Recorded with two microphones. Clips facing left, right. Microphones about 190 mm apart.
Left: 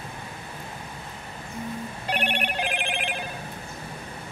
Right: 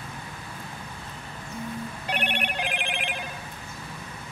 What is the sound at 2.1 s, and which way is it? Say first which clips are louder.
Telephone bell ringing: left 2 dB; 35° left (ahead or behind).